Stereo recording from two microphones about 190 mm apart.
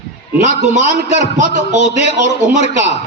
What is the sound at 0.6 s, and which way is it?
A man's voice, 40° right (ahead or behind).